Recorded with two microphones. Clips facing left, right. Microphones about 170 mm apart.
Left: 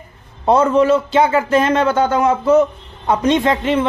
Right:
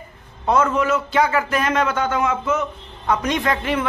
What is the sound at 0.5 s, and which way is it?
A man's voice, 30° left (ahead or behind).